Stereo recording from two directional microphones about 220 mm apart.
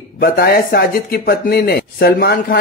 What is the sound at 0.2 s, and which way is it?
Speech, 45° left (ahead or behind).